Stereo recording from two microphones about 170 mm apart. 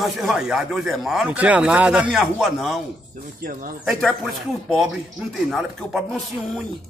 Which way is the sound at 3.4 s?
55° right (ahead or behind).